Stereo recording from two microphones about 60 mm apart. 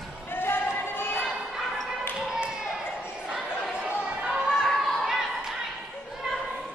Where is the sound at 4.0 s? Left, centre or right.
Centre.